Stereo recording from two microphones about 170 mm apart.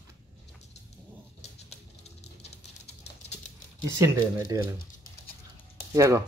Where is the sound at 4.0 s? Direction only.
20° right (ahead or behind).